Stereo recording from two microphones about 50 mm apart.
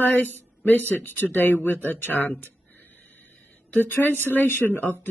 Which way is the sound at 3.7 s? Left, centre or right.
Left.